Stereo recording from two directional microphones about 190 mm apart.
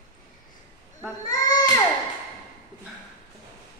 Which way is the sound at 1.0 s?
20° left (ahead or behind).